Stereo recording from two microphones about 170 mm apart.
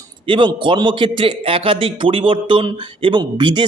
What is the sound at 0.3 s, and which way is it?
A man's voice, 30° right (ahead or behind).